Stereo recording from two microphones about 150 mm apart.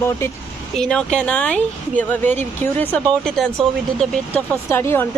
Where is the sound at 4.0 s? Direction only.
10° left (ahead or behind).